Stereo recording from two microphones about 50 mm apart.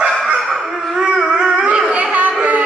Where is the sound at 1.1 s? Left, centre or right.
Centre.